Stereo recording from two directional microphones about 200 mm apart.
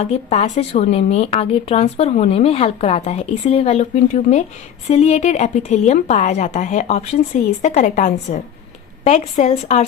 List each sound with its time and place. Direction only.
0.0 s a woman's voice: 30° left (ahead or behind)